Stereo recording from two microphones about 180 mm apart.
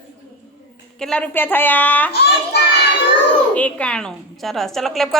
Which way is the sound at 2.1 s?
65° left (ahead or behind).